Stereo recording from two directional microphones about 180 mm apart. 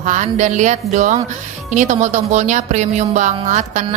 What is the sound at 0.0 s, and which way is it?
A woman's voice, 40° right (ahead or behind).